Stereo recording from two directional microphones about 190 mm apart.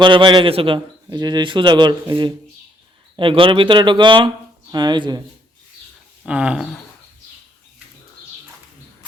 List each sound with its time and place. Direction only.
0.0 s a man's voice: 25° right (ahead or behind)
6.2 s speech: 5° right (ahead or behind)